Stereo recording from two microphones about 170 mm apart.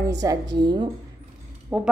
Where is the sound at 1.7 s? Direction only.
10° right (ahead or behind).